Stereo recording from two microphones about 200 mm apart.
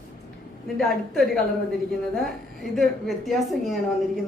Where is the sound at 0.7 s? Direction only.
Centre (ahead or behind).